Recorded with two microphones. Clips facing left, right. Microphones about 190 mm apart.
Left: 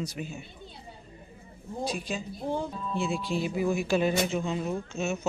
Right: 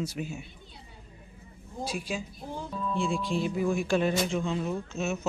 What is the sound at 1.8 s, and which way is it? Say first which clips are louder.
Speech: left 1 dB; 5° right (ahead or behind).